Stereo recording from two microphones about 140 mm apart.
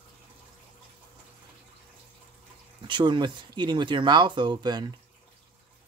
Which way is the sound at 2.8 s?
35° right (ahead or behind).